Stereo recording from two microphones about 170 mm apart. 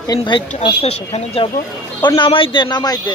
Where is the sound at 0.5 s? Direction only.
35° left (ahead or behind).